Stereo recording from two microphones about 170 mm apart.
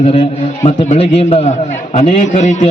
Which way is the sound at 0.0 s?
35° left (ahead or behind).